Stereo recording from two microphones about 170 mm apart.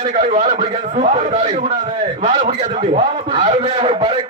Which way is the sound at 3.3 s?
30° right (ahead or behind).